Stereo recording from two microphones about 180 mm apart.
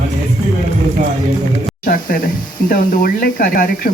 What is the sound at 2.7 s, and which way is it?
Speech, 55° left (ahead or behind).